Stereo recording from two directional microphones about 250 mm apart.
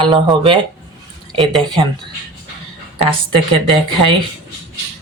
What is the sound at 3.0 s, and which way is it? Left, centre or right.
Speech, right.